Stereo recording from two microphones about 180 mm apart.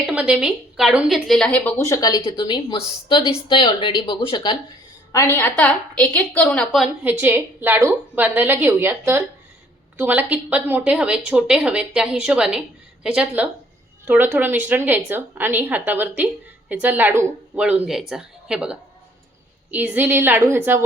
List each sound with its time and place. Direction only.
0.1 s a woman's voice: 5° right (ahead or behind)
1.8 s a woman's voice: 20° left (ahead or behind)
5.1 s a woman's voice: 10° left (ahead or behind)
6.8 s a woman's voice: 10° right (ahead or behind)